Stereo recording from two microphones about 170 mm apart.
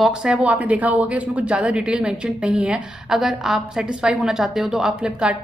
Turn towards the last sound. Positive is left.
turn(degrees=-5)  # may be behind; listen again after turning